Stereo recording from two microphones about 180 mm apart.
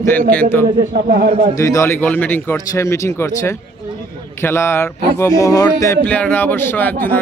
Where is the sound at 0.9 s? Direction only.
55° right (ahead or behind).